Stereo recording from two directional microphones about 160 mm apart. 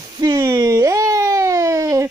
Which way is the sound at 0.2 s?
20° right (ahead or behind).